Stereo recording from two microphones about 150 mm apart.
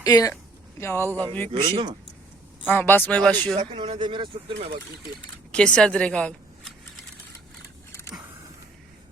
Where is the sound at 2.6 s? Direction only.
15° left (ahead or behind).